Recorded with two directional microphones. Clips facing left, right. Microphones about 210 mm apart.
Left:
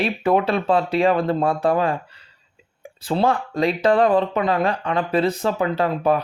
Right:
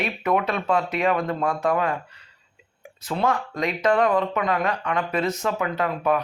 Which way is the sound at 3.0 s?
30° left (ahead or behind).